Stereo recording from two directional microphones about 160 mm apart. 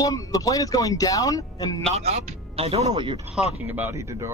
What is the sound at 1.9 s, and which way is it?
Speech, 40° right (ahead or behind).